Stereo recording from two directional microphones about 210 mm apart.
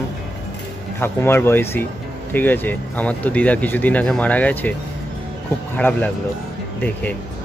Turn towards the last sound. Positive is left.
turn(degrees=5)  # may be behind; listen again after turning